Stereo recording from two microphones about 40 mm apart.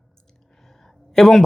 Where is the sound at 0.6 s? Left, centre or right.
Centre.